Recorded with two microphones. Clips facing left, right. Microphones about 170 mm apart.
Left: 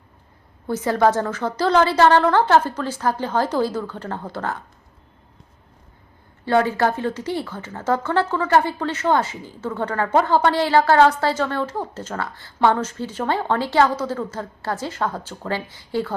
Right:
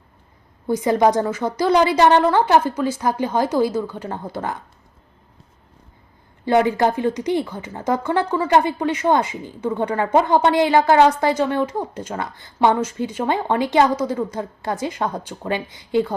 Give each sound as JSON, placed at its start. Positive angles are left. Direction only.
{"t": 0.7, "sound": "speech", "side_deg": -15}
{"t": 6.4, "sound": "speech", "side_deg": -15}